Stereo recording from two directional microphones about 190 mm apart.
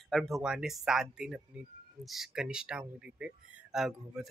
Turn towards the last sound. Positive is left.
turn(degrees=-5)  # may be behind; listen again after turning